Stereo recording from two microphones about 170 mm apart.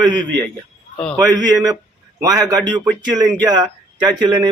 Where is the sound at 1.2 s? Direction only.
20° right (ahead or behind).